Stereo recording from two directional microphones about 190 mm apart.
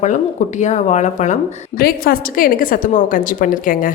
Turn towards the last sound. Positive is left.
turn(degrees=45)  # may be behind; listen again after turning